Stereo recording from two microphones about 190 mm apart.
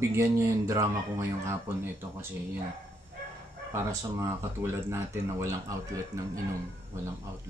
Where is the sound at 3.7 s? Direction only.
15° right (ahead or behind).